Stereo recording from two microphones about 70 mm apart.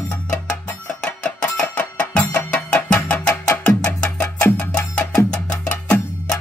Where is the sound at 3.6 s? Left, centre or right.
Centre.